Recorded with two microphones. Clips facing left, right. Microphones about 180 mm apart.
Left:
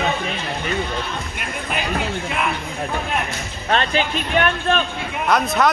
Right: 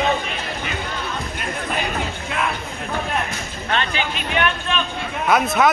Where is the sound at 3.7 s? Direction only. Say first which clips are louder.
Left 4 dB; 40° left (ahead or behind).